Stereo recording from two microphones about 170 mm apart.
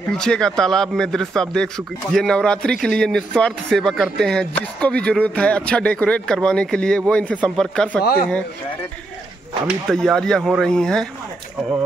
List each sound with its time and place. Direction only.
0.2 s speech: 5° left (ahead or behind)
8.0 s speech: 60° left (ahead or behind)
9.7 s speech: centre (ahead or behind)